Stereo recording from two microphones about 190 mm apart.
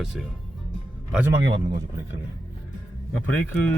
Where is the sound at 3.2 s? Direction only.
10° left (ahead or behind).